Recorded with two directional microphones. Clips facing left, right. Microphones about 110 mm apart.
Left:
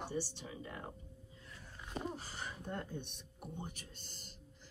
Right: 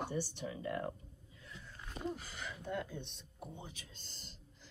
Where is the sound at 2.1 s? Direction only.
40° left (ahead or behind).